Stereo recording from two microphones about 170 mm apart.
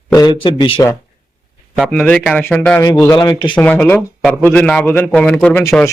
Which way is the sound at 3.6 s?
10° left (ahead or behind).